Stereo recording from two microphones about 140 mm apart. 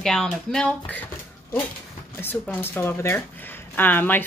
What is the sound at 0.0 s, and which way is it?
Speech, 5° left (ahead or behind).